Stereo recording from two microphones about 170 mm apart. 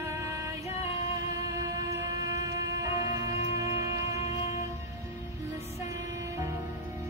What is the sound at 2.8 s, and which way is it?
Music, 20° right (ahead or behind).